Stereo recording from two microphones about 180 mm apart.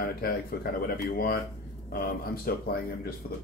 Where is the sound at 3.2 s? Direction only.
30° left (ahead or behind).